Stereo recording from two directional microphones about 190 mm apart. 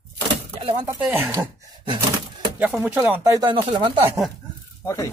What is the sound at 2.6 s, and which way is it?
Speech, 10° right (ahead or behind).